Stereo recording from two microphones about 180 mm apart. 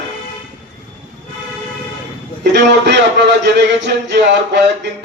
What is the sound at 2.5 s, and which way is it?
A man's voice, 75° right (ahead or behind).